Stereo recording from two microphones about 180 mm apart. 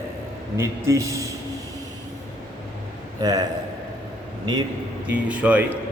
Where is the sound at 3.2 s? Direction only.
20° right (ahead or behind).